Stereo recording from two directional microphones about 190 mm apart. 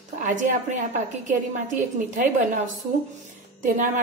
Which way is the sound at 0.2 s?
40° right (ahead or behind).